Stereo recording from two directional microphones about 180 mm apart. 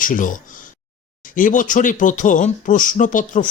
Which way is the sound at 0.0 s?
45° left (ahead or behind).